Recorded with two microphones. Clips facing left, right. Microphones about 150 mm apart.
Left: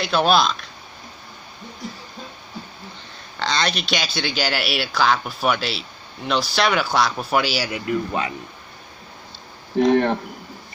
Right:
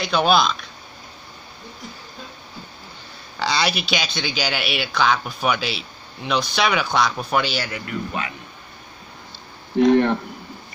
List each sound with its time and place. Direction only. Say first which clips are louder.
0.0 s speech: even; centre (ahead or behind)
3.3 s speech: right 1 dB; 5° right (ahead or behind); by 7.8 s 10° left (ahead or behind)
9.8 s speech: right 1 dB; 45° left (ahead or behind)